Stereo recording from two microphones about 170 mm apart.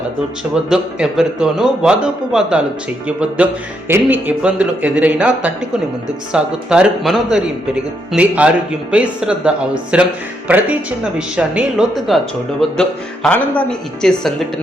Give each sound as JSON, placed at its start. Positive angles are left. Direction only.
{"t": 0.5, "sound": "a man's voice", "side_deg": -5}
{"t": 11.3, "sound": "a man's voice", "side_deg": -5}